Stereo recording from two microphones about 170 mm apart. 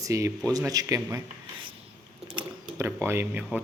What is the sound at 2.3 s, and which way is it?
Speech, 15° right (ahead or behind).